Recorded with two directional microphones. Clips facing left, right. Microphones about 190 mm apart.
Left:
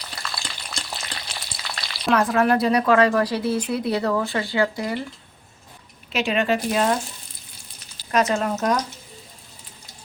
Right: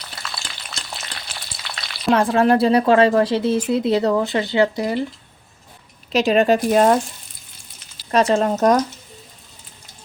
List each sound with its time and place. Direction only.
0.0 s frying: centre (ahead or behind)
2.0 s speech: 30° right (ahead or behind)
6.1 s speech: 40° right (ahead or behind)
8.1 s speech: 30° right (ahead or behind)